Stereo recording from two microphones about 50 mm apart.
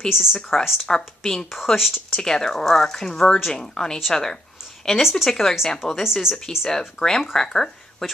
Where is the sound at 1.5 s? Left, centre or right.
Centre.